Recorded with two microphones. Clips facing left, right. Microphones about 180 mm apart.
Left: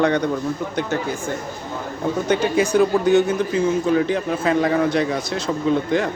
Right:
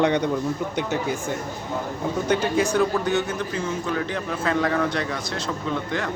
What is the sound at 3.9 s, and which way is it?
A man's voice, 20° left (ahead or behind).